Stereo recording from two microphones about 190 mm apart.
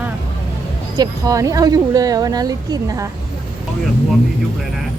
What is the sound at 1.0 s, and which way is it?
A woman's voice, 15° right (ahead or behind).